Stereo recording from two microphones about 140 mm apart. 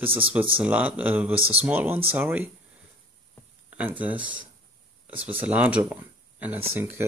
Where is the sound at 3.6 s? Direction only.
10° right (ahead or behind).